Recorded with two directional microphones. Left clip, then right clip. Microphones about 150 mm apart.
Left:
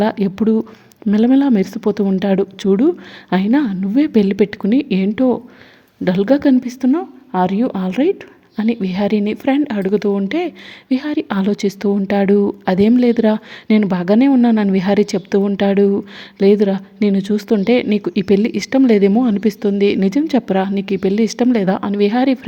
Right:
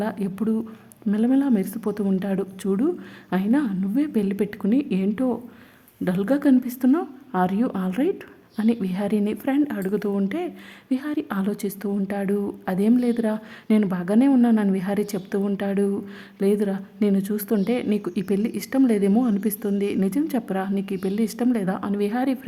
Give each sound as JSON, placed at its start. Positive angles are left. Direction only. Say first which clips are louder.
{"t": 0.0, "sound": "a woman's voice", "louder": "left 10 dB", "side_deg": 35}